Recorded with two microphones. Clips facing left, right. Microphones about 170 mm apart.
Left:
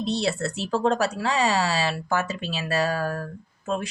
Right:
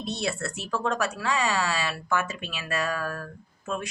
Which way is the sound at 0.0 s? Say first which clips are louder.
Left 5 dB; 30° left (ahead or behind).